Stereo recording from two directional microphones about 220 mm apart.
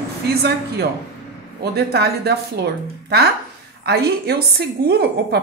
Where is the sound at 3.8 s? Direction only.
45° right (ahead or behind).